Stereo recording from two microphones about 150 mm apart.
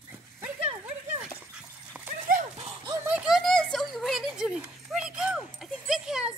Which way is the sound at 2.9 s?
10° right (ahead or behind).